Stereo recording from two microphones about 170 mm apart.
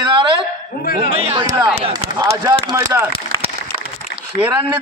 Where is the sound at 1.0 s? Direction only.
35° right (ahead or behind).